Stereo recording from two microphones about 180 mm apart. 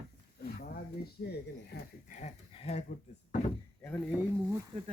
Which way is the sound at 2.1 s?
40° left (ahead or behind).